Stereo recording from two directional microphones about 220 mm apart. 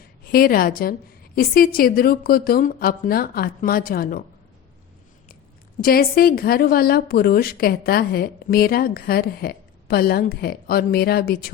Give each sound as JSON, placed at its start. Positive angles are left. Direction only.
{"t": 0.3, "sound": "a woman's voice", "side_deg": 40}
{"t": 5.8, "sound": "a woman's voice", "side_deg": 45}